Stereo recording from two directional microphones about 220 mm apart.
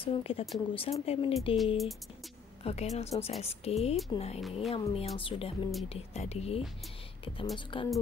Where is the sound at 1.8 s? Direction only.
Centre (ahead or behind).